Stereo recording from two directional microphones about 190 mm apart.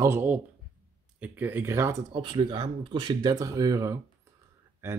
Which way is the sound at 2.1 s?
25° right (ahead or behind).